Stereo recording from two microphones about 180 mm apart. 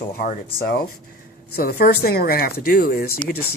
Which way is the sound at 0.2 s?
55° left (ahead or behind).